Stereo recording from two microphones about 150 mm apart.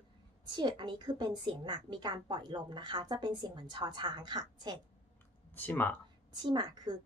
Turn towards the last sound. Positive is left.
turn(degrees=-30)  # may be behind; listen again after turning